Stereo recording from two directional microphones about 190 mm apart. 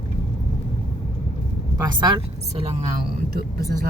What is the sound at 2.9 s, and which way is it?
Speech, 55° right (ahead or behind).